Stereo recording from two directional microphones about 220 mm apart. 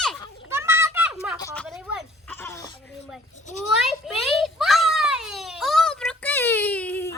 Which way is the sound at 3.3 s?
35° left (ahead or behind).